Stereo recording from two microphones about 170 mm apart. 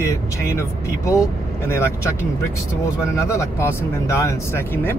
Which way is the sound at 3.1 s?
15° left (ahead or behind).